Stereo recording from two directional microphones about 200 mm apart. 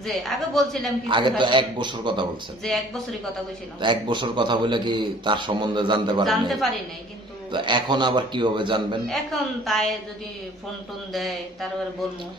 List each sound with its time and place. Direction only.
0.0 s a woman's voice: centre (ahead or behind)
1.0 s a man's voice: 25° right (ahead or behind)
2.6 s a woman's voice: centre (ahead or behind)
3.8 s a man's voice: 25° right (ahead or behind)
6.2 s a woman's voice: centre (ahead or behind)
7.5 s a man's voice: 25° right (ahead or behind)
9.0 s a woman's voice: centre (ahead or behind)